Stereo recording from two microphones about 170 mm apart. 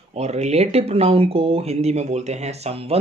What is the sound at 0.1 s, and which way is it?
Speech, 40° right (ahead or behind).